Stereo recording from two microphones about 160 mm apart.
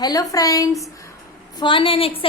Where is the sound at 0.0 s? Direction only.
25° left (ahead or behind).